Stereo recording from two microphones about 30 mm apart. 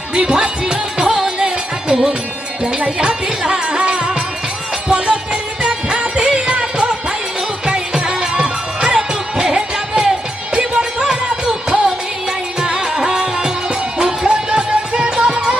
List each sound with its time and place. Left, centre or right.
0.1 s music: right
2.6 s speech: right
4.9 s music: right